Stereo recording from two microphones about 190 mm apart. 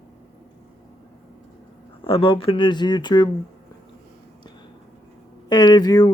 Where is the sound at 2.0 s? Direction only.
30° left (ahead or behind).